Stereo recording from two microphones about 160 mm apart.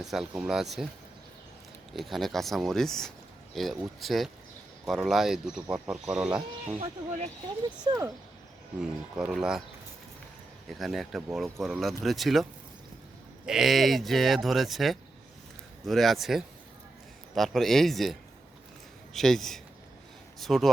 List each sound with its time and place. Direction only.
0.0 s speech: centre (ahead or behind)
1.9 s speech: centre (ahead or behind)
6.7 s speech: 45° right (ahead or behind)
8.8 s speech: 5° right (ahead or behind)
10.8 s speech: centre (ahead or behind)